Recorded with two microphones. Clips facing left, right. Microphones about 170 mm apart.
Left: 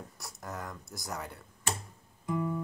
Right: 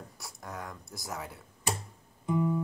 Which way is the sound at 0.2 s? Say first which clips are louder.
Even; centre (ahead or behind).